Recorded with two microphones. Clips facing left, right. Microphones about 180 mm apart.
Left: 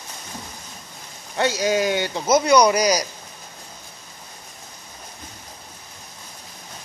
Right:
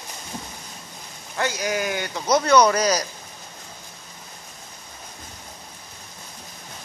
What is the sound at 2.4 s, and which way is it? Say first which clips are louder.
Speech: even; 10° left (ahead or behind).